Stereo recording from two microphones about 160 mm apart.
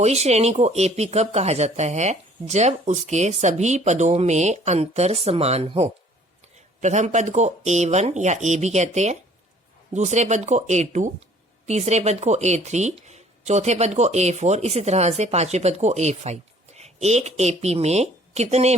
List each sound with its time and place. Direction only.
0.0 s speech: 45° right (ahead or behind)